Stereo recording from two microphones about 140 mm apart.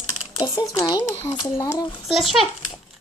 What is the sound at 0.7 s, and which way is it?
A child's voice, 30° left (ahead or behind).